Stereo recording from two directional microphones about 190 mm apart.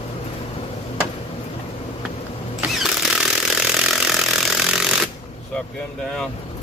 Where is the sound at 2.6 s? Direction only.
5° right (ahead or behind).